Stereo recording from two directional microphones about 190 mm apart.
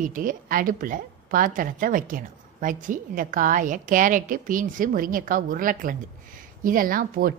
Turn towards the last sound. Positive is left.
turn(degrees=-50)  # may be behind; listen again after turning